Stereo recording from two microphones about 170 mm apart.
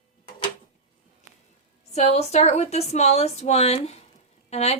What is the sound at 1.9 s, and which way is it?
A woman's voice, 40° left (ahead or behind).